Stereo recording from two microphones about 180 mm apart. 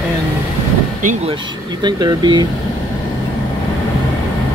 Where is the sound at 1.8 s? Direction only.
25° right (ahead or behind).